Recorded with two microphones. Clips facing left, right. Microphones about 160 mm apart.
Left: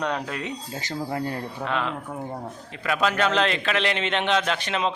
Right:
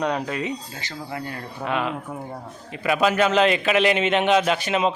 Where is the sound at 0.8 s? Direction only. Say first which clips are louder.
Left 4 dB; 40° left (ahead or behind).